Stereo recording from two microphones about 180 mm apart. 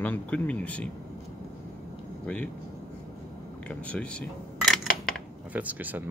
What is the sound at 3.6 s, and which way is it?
Speech, 5° left (ahead or behind).